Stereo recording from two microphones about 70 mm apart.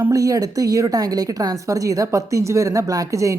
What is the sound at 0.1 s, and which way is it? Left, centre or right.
Speech, right.